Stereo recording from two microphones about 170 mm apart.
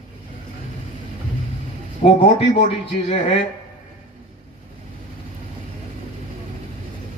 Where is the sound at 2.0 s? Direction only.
40° left (ahead or behind).